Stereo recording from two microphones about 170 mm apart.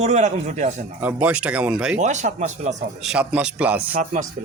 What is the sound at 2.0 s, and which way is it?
Speech, 45° right (ahead or behind).